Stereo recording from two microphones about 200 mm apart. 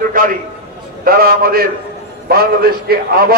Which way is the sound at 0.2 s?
45° right (ahead or behind).